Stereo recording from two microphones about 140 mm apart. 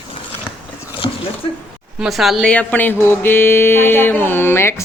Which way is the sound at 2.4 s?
10° left (ahead or behind).